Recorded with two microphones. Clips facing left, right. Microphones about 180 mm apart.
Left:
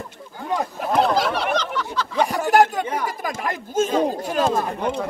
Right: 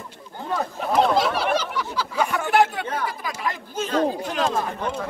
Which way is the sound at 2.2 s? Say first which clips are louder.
Left 3 dB; 35° left (ahead or behind).